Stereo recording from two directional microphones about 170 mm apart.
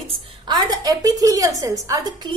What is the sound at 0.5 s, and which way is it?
A woman's voice, 20° right (ahead or behind).